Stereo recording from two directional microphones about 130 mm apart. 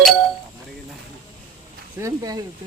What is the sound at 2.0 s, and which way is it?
Speech, 30° right (ahead or behind).